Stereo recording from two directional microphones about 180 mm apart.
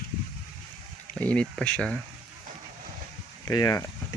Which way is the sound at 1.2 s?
5° left (ahead or behind).